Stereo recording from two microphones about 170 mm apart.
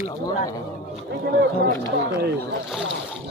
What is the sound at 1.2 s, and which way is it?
Speech, 65° right (ahead or behind).